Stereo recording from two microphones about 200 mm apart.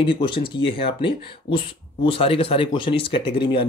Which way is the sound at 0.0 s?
25° left (ahead or behind).